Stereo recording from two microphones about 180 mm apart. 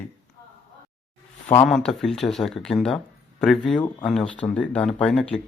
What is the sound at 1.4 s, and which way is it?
Speech, 5° left (ahead or behind).